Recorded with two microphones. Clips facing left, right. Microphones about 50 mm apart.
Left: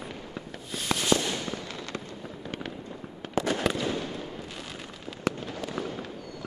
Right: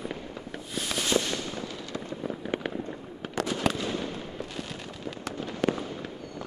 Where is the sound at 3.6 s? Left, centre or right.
Centre.